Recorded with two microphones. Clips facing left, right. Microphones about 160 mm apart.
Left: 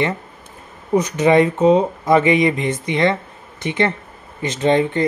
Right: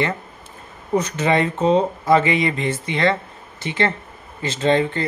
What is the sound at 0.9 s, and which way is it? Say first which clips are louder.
Speech: left 5 dB; 15° left (ahead or behind).